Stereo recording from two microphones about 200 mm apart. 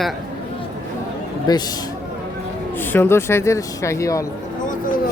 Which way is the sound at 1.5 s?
20° left (ahead or behind).